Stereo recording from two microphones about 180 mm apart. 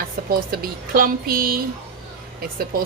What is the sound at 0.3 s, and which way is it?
A woman's voice, 55° right (ahead or behind).